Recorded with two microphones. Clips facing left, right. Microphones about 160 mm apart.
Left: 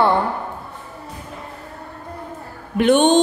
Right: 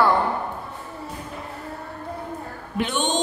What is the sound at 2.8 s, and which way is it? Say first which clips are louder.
Speech: left 11 dB; 60° left (ahead or behind).